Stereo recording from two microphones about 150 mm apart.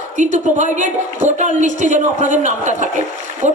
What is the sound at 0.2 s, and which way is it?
A man's voice, 55° right (ahead or behind).